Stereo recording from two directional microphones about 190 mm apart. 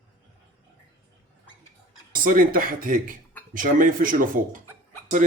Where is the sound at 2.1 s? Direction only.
45° right (ahead or behind).